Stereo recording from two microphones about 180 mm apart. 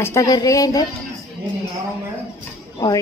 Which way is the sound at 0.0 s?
15° left (ahead or behind).